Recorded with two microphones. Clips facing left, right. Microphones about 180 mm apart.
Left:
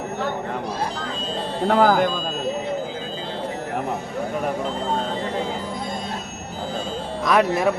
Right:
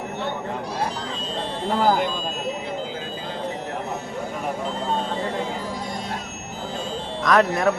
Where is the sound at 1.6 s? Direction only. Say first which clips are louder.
Left 4 dB; 60° left (ahead or behind).